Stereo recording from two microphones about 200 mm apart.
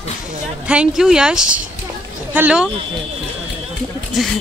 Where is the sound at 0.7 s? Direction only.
5° right (ahead or behind).